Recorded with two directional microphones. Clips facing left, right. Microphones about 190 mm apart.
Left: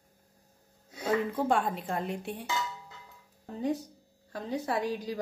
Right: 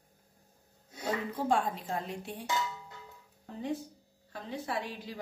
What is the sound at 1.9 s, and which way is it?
Speech, 55° left (ahead or behind).